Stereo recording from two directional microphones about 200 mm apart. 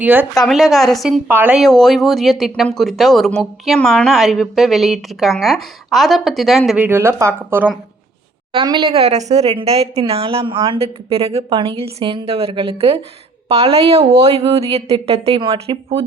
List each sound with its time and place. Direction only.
0.0 s a woman's voice: 10° right (ahead or behind); by 16.0 s 30° right (ahead or behind)